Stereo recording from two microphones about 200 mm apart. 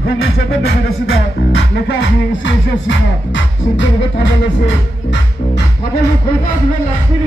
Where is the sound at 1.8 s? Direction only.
65° left (ahead or behind).